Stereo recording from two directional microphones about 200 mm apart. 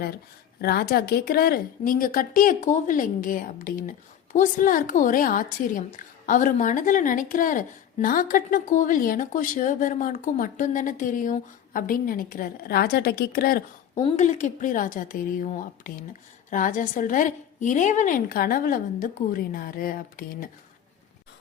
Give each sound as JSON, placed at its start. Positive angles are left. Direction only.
{"t": 0.6, "sound": "a woman's voice", "side_deg": 50}
{"t": 14.0, "sound": "a woman's voice", "side_deg": 35}